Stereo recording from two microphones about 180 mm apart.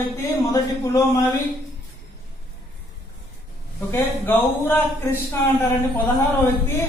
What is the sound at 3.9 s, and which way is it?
A woman's voice, 10° left (ahead or behind).